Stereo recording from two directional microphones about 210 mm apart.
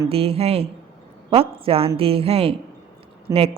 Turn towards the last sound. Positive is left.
turn(degrees=-25)  # may be behind; listen again after turning